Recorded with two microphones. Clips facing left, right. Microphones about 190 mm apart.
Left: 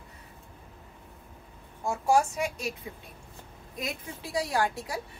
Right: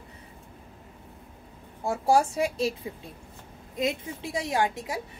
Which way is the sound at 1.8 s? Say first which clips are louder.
Right 2 dB; 35° right (ahead or behind).